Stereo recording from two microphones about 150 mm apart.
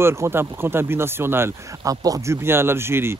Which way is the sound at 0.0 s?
15° right (ahead or behind).